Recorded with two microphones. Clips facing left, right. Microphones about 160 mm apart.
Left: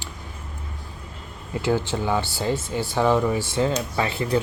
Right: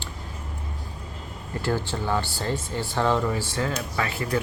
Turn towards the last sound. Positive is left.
turn(degrees=25)  # may be behind; listen again after turning